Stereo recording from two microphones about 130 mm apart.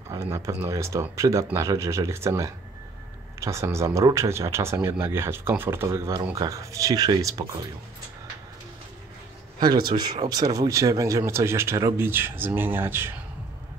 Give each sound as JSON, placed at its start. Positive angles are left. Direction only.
{"t": 0.1, "sound": "speech", "side_deg": -20}
{"t": 9.6, "sound": "speech", "side_deg": -30}